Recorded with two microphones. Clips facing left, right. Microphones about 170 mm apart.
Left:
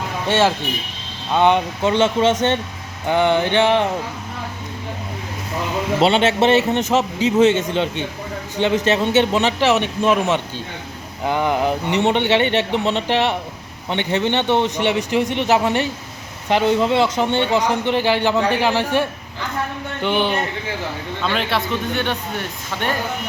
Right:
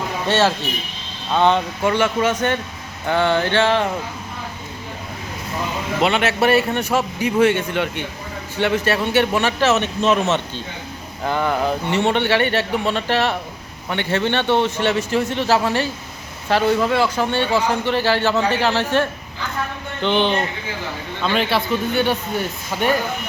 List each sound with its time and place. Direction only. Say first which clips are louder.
0.3 s a man's voice: left 1 dB; 15° left (ahead or behind)
6.0 s a man's voice: left 2 dB; 30° left (ahead or behind); by 20.3 s 10° left (ahead or behind)
21.2 s a man's voice: right 2 dB; centre (ahead or behind)